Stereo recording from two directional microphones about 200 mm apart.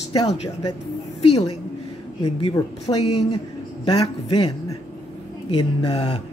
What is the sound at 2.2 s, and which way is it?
Speech, 20° left (ahead or behind).